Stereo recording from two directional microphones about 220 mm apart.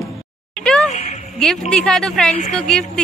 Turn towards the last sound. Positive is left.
turn(degrees=5)  # may be behind; listen again after turning